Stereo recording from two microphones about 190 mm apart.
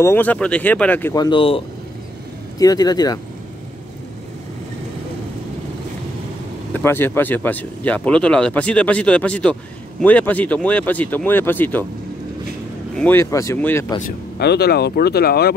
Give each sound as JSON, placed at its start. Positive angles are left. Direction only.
{"t": 0.0, "sound": "speech", "side_deg": 10}
{"t": 1.1, "sound": "speech", "side_deg": 25}
{"t": 2.6, "sound": "speech", "side_deg": 20}
{"t": 6.7, "sound": "speech", "side_deg": 10}
{"t": 12.9, "sound": "speech", "side_deg": 10}
{"t": 14.4, "sound": "speech", "side_deg": 60}